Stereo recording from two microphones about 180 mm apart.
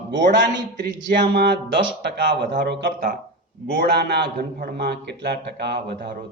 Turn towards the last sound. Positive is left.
turn(degrees=-70)  # may be behind; listen again after turning